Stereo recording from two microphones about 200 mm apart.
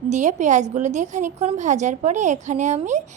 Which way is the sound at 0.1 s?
35° right (ahead or behind).